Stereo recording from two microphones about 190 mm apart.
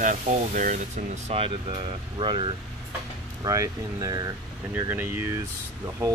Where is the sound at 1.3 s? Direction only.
30° right (ahead or behind).